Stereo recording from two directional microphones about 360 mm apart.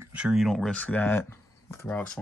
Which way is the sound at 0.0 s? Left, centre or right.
Centre.